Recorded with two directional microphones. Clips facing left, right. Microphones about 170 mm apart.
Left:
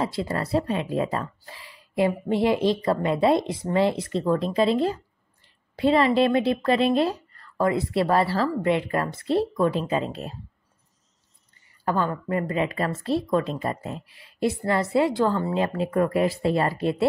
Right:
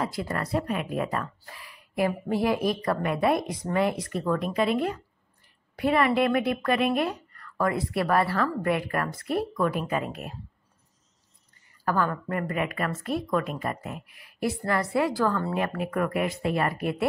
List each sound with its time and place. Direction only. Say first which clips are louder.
0.0 s speech: left 3 dB; 25° left (ahead or behind)
11.8 s speech: left 1 dB; 20° left (ahead or behind)